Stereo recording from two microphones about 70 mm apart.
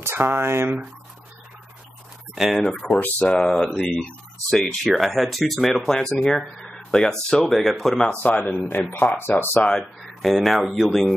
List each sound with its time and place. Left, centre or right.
0.0 s speech: right
2.3 s speech: centre
8.2 s a man's voice: left
9.6 s speech: centre
10.2 s speech: centre